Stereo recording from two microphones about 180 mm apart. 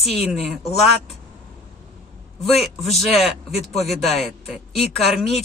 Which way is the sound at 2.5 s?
Centre (ahead or behind).